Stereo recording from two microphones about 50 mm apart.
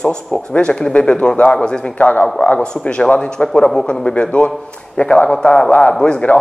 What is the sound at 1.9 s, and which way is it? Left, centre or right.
Speech, left.